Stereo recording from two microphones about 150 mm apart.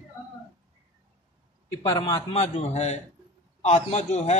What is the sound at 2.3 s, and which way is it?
Speech, 45° left (ahead or behind).